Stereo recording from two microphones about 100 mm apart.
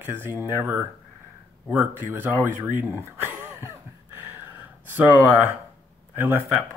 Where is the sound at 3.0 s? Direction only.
20° right (ahead or behind).